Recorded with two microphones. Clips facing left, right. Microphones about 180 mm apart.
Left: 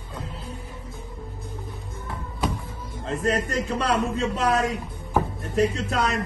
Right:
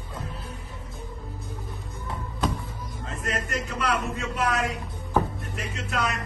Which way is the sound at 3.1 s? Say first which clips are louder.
Left 7 dB; 30° left (ahead or behind).